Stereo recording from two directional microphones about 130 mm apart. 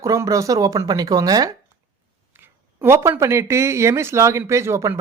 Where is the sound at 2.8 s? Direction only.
20° right (ahead or behind).